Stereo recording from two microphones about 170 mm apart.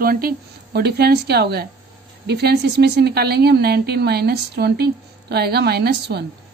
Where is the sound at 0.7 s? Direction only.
70° right (ahead or behind).